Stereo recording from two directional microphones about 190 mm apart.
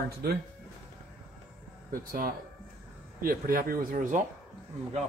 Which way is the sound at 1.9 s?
50° right (ahead or behind).